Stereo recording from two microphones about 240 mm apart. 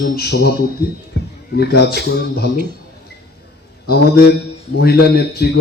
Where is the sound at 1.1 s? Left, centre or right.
Left.